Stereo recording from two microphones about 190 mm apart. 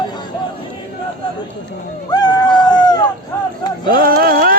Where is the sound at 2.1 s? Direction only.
20° left (ahead or behind).